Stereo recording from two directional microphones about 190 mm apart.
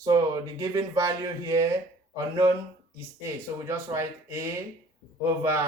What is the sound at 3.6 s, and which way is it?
Speech, 15° right (ahead or behind).